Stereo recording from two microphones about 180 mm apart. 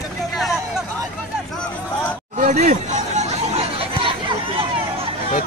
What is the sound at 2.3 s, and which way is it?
Chatter, 45° right (ahead or behind).